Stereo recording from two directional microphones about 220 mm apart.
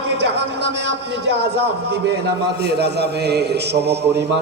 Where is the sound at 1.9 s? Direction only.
50° right (ahead or behind).